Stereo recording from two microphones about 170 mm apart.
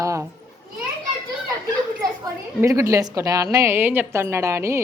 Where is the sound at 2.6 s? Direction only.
20° right (ahead or behind).